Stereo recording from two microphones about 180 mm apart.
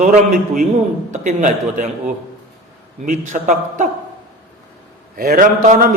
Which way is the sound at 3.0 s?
45° right (ahead or behind).